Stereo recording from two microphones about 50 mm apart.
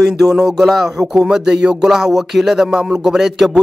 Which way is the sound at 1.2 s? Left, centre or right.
Centre.